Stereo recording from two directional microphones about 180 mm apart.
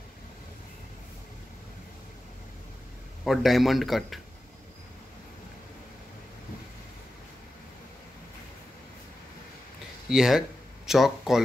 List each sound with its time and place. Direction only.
3.3 s a man's voice: centre (ahead or behind)
10.0 s a man's voice: centre (ahead or behind)